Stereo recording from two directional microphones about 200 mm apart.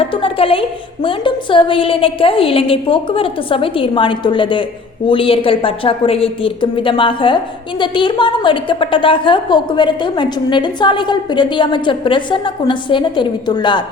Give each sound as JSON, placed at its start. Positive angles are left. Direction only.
{"t": 0.0, "sound": "a woman's voice", "side_deg": 25}